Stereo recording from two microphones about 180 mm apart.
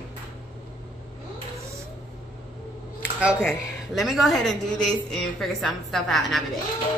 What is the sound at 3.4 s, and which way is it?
A woman's voice, centre (ahead or behind).